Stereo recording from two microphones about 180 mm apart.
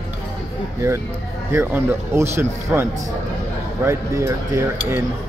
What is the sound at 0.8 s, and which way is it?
Cutlery, 15° right (ahead or behind).